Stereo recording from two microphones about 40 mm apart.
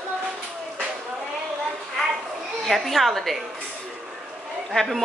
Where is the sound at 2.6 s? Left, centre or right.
Centre.